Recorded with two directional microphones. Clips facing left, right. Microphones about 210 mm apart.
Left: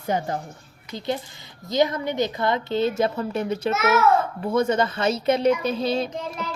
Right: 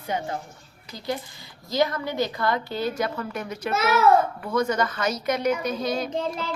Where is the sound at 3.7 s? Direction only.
35° right (ahead or behind).